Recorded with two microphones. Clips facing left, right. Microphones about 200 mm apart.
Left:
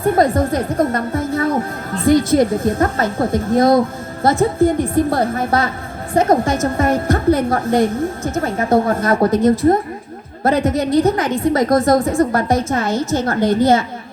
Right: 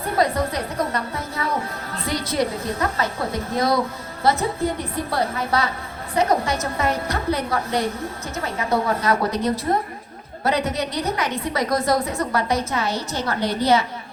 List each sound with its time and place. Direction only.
0.0 s a woman's voice: 50° left (ahead or behind)